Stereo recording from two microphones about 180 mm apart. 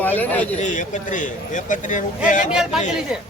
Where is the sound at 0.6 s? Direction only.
40° left (ahead or behind).